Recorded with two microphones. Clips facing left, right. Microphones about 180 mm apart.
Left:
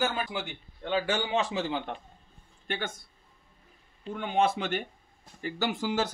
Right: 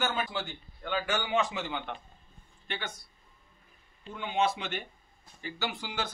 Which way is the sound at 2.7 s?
50° left (ahead or behind).